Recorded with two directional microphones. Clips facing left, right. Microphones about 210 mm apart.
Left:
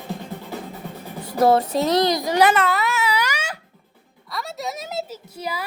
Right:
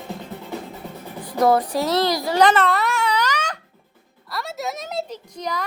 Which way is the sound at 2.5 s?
Centre (ahead or behind).